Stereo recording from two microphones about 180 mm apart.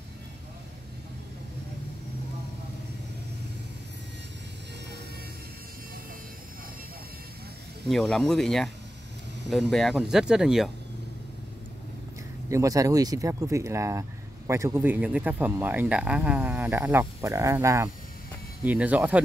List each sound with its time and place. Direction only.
7.9 s speech: centre (ahead or behind)
12.4 s speech: 20° right (ahead or behind)